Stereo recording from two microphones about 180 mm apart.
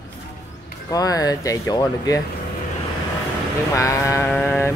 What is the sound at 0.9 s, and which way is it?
Speech, 20° left (ahead or behind).